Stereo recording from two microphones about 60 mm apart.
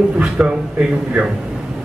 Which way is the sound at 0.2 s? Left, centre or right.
Centre.